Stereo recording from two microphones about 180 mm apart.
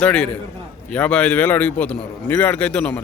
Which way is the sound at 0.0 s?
5° left (ahead or behind).